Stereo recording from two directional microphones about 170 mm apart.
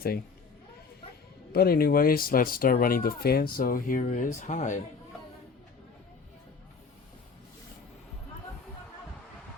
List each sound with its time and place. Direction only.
1.5 s speech: 65° left (ahead or behind); by 4.8 s 45° left (ahead or behind)